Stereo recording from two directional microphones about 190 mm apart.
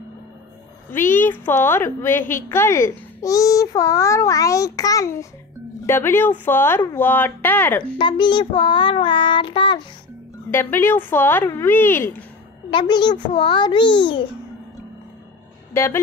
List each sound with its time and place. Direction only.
0.8 s a child's voice: 10° left (ahead or behind)
8.0 s child singing: 25° left (ahead or behind)
10.5 s a child's voice: 10° left (ahead or behind)
12.7 s child singing: 25° left (ahead or behind)
15.7 s speech: 15° left (ahead or behind)